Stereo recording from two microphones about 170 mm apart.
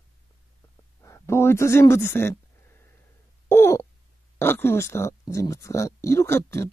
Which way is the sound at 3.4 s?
15° left (ahead or behind).